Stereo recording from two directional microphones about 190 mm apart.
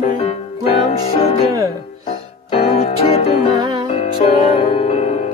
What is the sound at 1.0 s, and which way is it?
Music, 30° left (ahead or behind).